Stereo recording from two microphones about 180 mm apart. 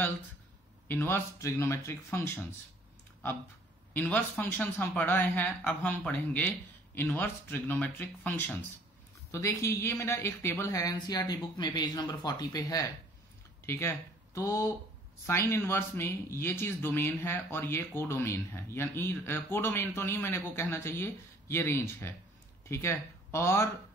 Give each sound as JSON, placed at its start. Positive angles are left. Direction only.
{"t": 0.8, "sound": "speech", "side_deg": 10}
{"t": 3.9, "sound": "speech", "side_deg": 10}